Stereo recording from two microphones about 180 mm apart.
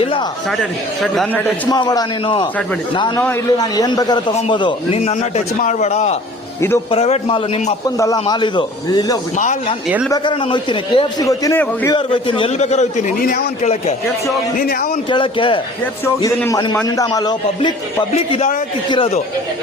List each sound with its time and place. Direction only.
0.0 s a sound: 30° left (ahead or behind)
0.5 s a man's voice: 5° left (ahead or behind)
1.7 s a man's voice: 20° left (ahead or behind)
7.9 s a man's voice: 20° left (ahead or behind)
9.4 s a man's voice: 40° left (ahead or behind)
10.1 s a man's voice: 25° left (ahead or behind); by 14.8 s 55° left (ahead or behind)
15.1 s a man's voice: 30° left (ahead or behind)
16.0 s a man's voice: 15° left (ahead or behind)
18.1 s a man's voice: 35° left (ahead or behind)